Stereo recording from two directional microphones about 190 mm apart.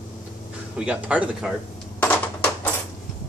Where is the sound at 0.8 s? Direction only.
5° right (ahead or behind).